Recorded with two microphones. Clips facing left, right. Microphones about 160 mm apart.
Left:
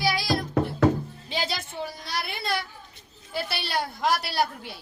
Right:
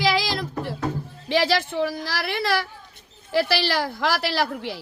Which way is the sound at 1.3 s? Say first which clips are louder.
Right 10 dB; 70° right (ahead or behind).